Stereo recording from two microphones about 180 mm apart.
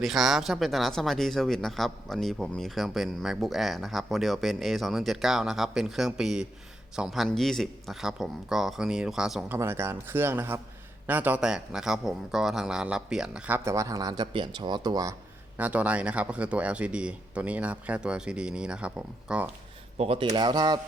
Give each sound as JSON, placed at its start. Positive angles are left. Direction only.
{"t": 0.0, "sound": "speech", "side_deg": 0}
{"t": 9.6, "sound": "speech", "side_deg": -15}
{"t": 15.5, "sound": "speech", "side_deg": -10}
{"t": 20.0, "sound": "speech", "side_deg": -35}